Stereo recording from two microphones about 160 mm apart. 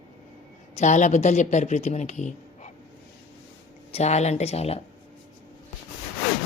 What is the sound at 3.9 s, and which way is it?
Speech, 40° left (ahead or behind).